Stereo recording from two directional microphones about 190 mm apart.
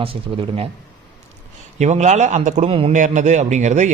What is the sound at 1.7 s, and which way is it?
Speech, 35° right (ahead or behind).